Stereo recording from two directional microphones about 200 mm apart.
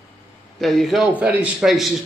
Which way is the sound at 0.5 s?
Centre (ahead or behind).